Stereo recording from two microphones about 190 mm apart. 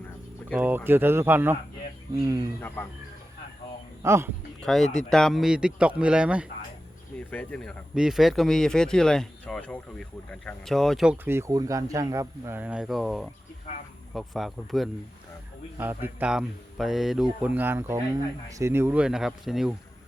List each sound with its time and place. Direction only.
0.5 s speech: 10° right (ahead or behind)
2.6 s speech: 10° left (ahead or behind)
4.0 s speech: 15° right (ahead or behind)
4.6 s speech: centre (ahead or behind)
7.3 s speech: 5° left (ahead or behind)
15.8 s speech: 10° right (ahead or behind)